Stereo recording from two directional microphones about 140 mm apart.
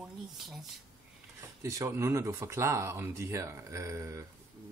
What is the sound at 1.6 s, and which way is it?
Speech, 20° right (ahead or behind).